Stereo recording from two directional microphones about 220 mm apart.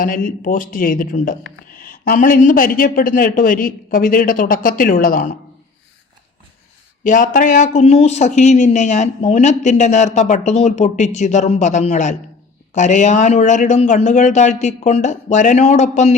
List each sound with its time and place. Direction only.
0.0 s a man's voice: 40° left (ahead or behind)
7.0 s a man's voice: 35° left (ahead or behind)